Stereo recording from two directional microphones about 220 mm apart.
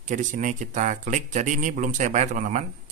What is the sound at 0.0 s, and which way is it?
Speech, 35° right (ahead or behind).